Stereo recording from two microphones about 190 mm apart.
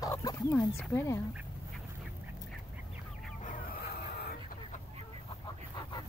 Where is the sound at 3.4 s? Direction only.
50° left (ahead or behind).